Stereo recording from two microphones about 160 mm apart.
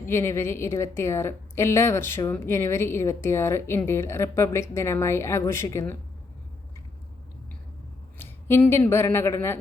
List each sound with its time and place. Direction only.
0.1 s a woman's voice: 15° left (ahead or behind)
8.2 s speech: 15° left (ahead or behind)